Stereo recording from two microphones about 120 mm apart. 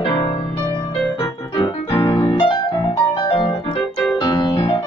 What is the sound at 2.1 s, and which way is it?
Piano, 50° left (ahead or behind).